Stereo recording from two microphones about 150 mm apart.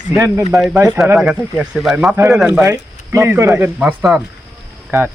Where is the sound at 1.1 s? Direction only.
5° right (ahead or behind).